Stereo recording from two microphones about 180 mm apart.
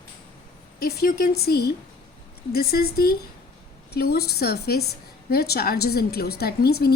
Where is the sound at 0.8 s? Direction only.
60° left (ahead or behind).